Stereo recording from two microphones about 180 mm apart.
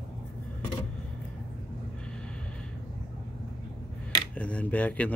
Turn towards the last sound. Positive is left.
turn(degrees=5)  # may be behind; listen again after turning